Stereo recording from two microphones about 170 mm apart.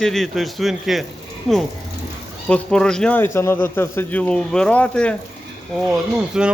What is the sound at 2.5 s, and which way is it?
Speech, 5° left (ahead or behind).